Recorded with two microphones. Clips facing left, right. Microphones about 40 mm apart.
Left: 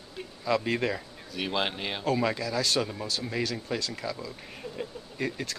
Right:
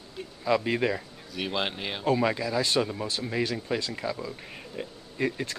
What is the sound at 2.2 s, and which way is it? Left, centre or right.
Speech, centre.